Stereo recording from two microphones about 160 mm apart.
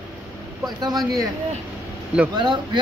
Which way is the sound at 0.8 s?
25° right (ahead or behind).